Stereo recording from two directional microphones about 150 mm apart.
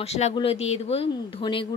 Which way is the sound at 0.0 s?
45° left (ahead or behind).